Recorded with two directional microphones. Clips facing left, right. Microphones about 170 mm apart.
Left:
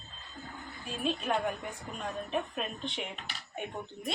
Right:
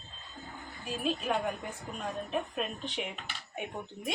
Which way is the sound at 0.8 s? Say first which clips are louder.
Right 1 dB; 5° right (ahead or behind).